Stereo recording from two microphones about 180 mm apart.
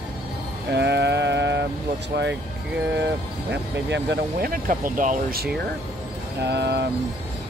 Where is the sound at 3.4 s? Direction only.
75° right (ahead or behind).